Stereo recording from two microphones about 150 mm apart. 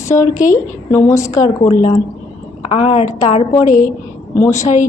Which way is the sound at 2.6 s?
45° left (ahead or behind).